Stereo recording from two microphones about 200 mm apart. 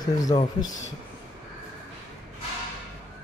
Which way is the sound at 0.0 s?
20° left (ahead or behind).